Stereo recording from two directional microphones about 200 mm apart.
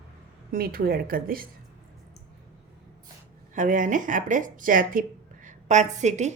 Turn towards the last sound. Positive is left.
turn(degrees=-35)  # may be behind; listen again after turning